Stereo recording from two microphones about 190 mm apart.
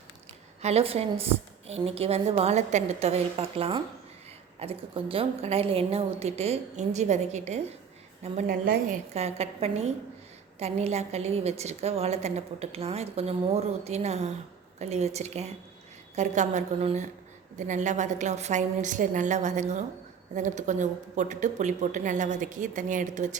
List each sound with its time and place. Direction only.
0.6 s a woman's voice: 30° right (ahead or behind)
8.4 s a woman's voice: 50° right (ahead or behind)
9.1 s a woman's voice: 35° right (ahead or behind)